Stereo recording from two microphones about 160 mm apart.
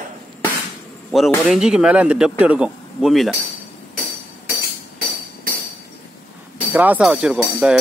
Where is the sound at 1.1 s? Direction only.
Centre (ahead or behind).